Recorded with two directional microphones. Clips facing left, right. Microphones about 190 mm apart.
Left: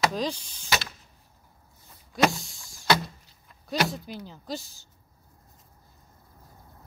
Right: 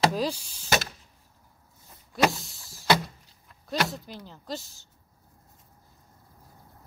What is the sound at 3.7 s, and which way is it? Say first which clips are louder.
Speech: left 1 dB; centre (ahead or behind).